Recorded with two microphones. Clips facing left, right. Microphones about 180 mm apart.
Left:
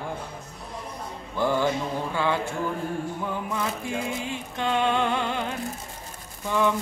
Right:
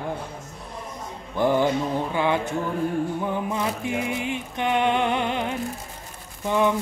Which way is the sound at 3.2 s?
20° right (ahead or behind).